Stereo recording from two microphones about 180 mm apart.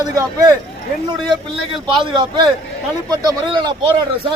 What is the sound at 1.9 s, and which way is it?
Speech, 25° right (ahead or behind).